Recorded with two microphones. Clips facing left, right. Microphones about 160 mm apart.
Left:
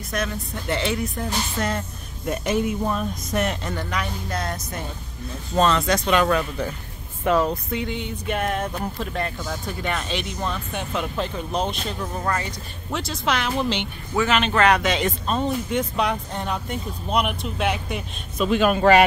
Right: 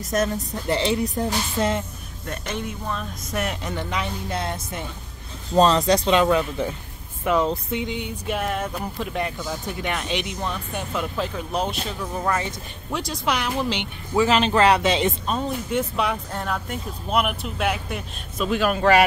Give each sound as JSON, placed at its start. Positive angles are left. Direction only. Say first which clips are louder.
{"t": 0.1, "sound": "speech", "louder": "right 4 dB", "side_deg": -40}
{"t": 0.7, "sound": "speech", "louder": "right 3 dB", "side_deg": -30}
{"t": 2.2, "sound": "speech", "louder": "left 7 dB", "side_deg": 10}
{"t": 3.3, "sound": "speech", "louder": "left 2 dB", "side_deg": -5}
{"t": 3.7, "sound": "speech", "louder": "even", "side_deg": -20}
{"t": 6.0, "sound": "speech", "louder": "right 1 dB", "side_deg": -20}
{"t": 14.1, "sound": "speech", "louder": "right 2 dB", "side_deg": -30}
{"t": 15.2, "sound": "speech", "louder": "left 2 dB", "side_deg": -5}